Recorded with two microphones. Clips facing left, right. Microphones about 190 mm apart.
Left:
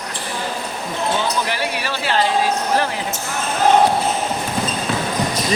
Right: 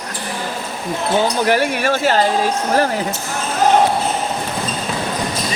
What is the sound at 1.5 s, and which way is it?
Speech, 50° right (ahead or behind).